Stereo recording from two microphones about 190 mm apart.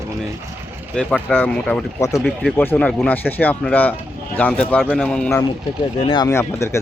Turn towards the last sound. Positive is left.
turn(degrees=15)  # may be behind; listen again after turning